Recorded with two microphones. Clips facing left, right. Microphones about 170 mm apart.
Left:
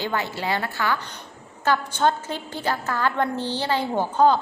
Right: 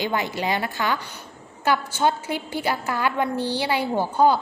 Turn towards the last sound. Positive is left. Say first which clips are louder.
# even
turn(degrees=-10)  # may be behind; listen again after turning